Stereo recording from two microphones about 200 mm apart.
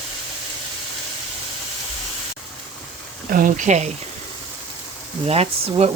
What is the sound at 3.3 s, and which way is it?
Speech, 45° right (ahead or behind).